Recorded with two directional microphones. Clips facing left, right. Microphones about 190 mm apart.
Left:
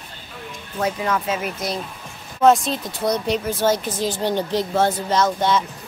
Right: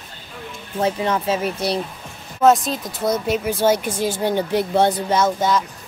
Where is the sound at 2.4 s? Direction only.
Centre (ahead or behind).